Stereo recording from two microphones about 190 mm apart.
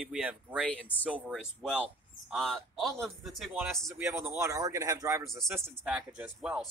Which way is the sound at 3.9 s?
15° right (ahead or behind).